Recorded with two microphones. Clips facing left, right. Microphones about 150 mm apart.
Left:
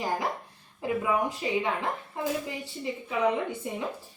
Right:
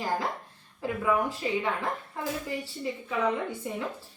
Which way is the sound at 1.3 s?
20° left (ahead or behind).